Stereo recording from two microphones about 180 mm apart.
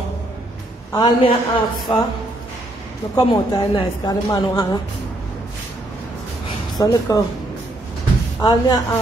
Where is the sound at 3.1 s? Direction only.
20° left (ahead or behind).